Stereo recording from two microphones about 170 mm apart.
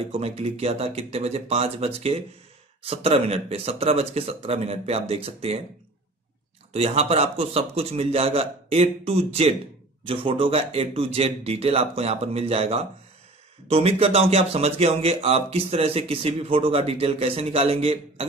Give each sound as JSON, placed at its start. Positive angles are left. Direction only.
{"t": 0.1, "sound": "a man's voice", "side_deg": -35}
{"t": 6.7, "sound": "a man's voice", "side_deg": -35}